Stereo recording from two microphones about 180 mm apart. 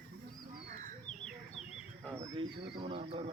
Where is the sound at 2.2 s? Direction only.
30° right (ahead or behind).